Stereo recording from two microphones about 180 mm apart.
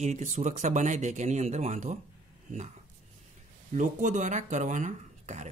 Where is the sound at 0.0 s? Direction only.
40° right (ahead or behind).